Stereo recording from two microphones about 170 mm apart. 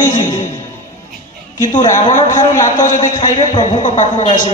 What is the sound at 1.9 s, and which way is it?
A man's voice, 45° left (ahead or behind).